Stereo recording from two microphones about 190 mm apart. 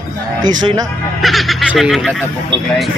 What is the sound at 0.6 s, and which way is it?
Speech, 20° right (ahead or behind).